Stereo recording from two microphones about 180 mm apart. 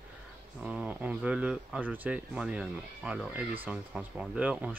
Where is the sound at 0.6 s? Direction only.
5° right (ahead or behind).